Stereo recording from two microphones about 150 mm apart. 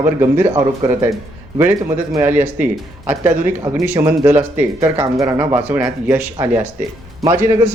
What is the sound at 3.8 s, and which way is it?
Speech, 15° right (ahead or behind).